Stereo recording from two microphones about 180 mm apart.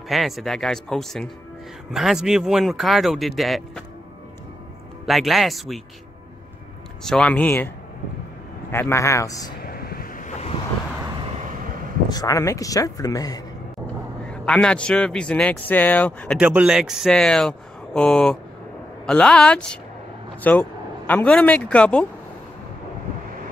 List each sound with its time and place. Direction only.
0.1 s a man's voice: centre (ahead or behind)
5.0 s a man's voice: centre (ahead or behind)
7.0 s a man's voice: 5° left (ahead or behind)
8.7 s speech: 15° left (ahead or behind)
9.6 s a sound: 55° left (ahead or behind)
12.1 s speech: 20° left (ahead or behind)
14.3 s a man's voice: 5° left (ahead or behind)
16.3 s a man's voice: 5° right (ahead or behind)